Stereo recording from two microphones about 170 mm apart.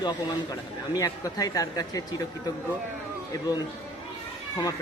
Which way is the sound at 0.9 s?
20° left (ahead or behind).